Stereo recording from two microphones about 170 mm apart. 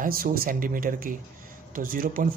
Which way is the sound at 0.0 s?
60° right (ahead or behind).